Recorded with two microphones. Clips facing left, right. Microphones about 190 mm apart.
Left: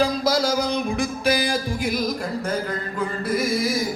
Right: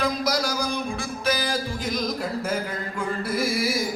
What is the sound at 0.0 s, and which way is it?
Music, 25° left (ahead or behind).